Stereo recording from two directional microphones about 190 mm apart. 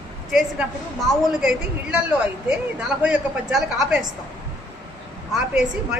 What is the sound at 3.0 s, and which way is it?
Speech, 5° right (ahead or behind).